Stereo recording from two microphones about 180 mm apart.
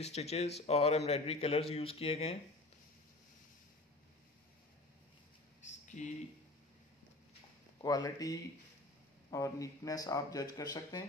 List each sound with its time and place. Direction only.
0.0 s speech: 35° left (ahead or behind)
5.9 s speech: 45° left (ahead or behind)
7.8 s speech: 20° left (ahead or behind)